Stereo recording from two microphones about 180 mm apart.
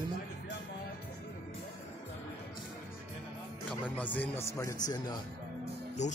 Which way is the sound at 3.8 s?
10° left (ahead or behind).